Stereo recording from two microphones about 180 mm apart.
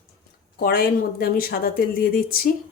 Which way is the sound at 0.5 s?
55° left (ahead or behind).